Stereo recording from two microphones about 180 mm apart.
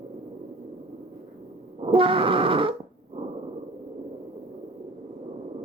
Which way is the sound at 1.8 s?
30° right (ahead or behind).